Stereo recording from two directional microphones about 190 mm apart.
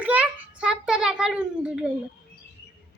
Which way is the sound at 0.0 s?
5° right (ahead or behind).